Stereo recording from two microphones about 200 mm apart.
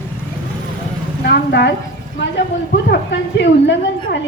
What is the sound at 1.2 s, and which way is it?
Speech, 55° left (ahead or behind).